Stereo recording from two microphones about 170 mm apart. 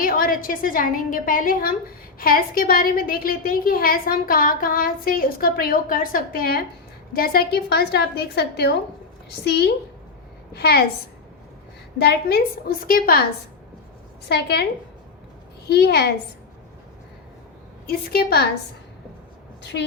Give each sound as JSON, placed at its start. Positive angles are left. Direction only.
{"t": 0.0, "sound": "a woman's voice", "side_deg": 55}
{"t": 11.9, "sound": "a woman's voice", "side_deg": 70}
{"t": 14.3, "sound": "a woman's voice", "side_deg": 75}
{"t": 17.8, "sound": "a woman's voice", "side_deg": 65}
{"t": 19.7, "sound": "a woman's voice", "side_deg": 90}